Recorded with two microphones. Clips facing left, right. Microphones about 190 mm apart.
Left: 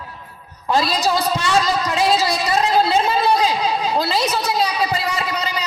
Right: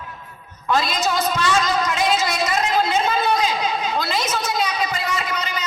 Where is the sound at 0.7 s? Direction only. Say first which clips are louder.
Left 3 dB; 35° left (ahead or behind).